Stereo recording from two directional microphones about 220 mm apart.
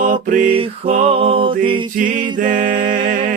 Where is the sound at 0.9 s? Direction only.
30° right (ahead or behind).